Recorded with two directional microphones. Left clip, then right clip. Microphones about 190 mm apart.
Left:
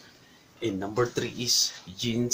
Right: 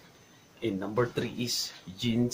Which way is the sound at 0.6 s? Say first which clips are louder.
Left 2 dB; 5° left (ahead or behind).